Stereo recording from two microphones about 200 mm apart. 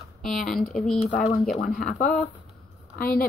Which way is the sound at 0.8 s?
35° left (ahead or behind).